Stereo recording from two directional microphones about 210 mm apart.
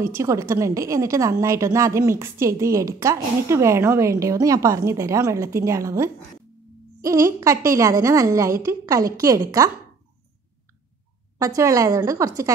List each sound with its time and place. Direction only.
0.0 s a woman's voice: 15° right (ahead or behind)
11.3 s a woman's voice: 15° right (ahead or behind)